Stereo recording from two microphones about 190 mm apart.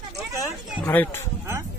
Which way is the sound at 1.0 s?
10° left (ahead or behind).